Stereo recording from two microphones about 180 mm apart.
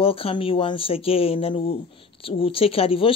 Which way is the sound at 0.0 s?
30° left (ahead or behind).